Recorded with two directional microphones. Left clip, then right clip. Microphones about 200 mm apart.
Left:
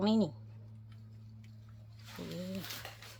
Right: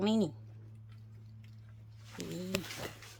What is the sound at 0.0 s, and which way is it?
Speech, 10° right (ahead or behind).